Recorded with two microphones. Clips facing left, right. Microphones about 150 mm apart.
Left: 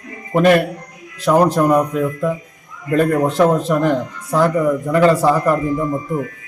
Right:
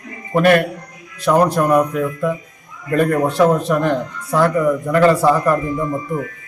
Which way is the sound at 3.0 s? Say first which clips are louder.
Even; 5° left (ahead or behind).